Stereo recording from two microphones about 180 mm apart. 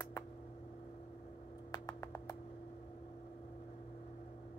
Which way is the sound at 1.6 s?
20° left (ahead or behind).